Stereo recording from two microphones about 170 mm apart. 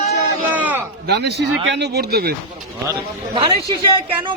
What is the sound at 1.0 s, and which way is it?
Speech, 80° right.